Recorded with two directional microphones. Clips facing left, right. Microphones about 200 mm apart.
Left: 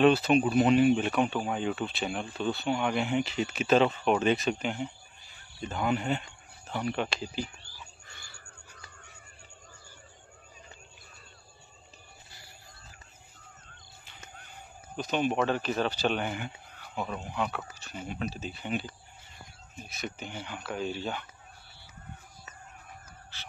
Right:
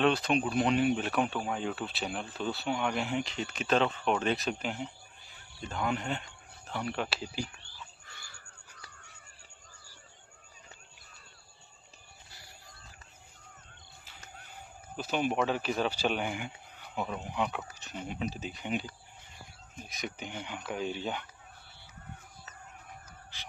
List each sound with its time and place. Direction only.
0.0 s speech: 5° left (ahead or behind)
7.4 s a sound: 15° left (ahead or behind)
15.0 s speech: 5° right (ahead or behind)
23.3 s dog: 15° right (ahead or behind)